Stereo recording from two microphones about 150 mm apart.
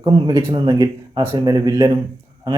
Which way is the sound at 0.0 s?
25° right (ahead or behind).